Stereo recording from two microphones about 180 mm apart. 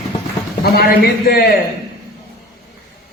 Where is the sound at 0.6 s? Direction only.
60° left (ahead or behind).